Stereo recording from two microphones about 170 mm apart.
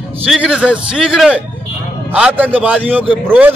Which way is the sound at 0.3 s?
5° right (ahead or behind).